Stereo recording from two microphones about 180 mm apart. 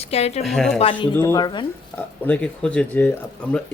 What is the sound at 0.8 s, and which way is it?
Speech, 30° left (ahead or behind).